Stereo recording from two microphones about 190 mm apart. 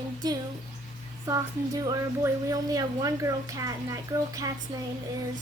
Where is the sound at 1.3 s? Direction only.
15° right (ahead or behind).